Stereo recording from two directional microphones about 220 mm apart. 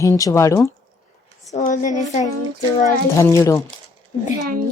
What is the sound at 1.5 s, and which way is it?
Speech, 35° left (ahead or behind).